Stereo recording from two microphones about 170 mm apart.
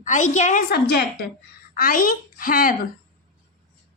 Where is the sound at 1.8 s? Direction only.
55° left (ahead or behind).